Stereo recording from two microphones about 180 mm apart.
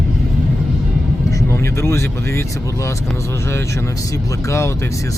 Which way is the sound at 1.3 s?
15° left (ahead or behind).